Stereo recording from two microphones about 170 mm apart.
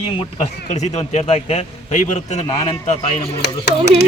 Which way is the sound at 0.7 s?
40° left (ahead or behind).